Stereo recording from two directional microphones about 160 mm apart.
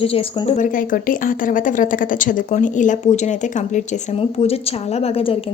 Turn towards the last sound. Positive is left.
turn(degrees=35)  # may be behind; listen again after turning